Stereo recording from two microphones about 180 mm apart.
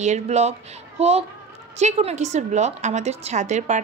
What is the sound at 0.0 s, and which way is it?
A woman's voice, 40° right (ahead or behind).